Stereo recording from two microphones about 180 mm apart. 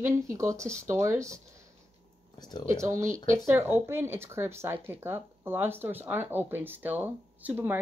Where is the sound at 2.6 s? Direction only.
15° right (ahead or behind).